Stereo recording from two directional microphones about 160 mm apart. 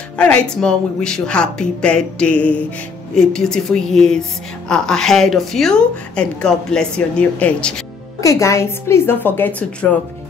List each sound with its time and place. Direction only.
0.2 s a woman's voice: 5° left (ahead or behind)
8.2 s a woman's voice: 20° left (ahead or behind)